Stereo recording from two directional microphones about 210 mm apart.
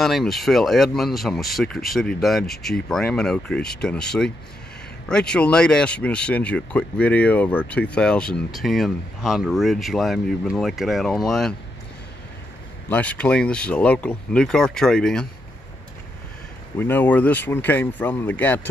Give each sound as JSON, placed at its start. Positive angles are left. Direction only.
{"t": 0.0, "sound": "speech", "side_deg": 0}
{"t": 12.9, "sound": "speech", "side_deg": 5}
{"t": 16.7, "sound": "speech", "side_deg": 10}